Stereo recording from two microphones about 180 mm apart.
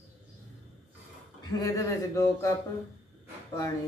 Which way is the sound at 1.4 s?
20° left (ahead or behind).